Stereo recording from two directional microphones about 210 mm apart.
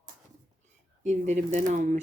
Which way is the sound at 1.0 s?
35° right (ahead or behind).